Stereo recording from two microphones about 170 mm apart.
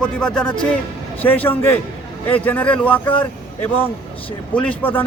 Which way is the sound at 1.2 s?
10° left (ahead or behind).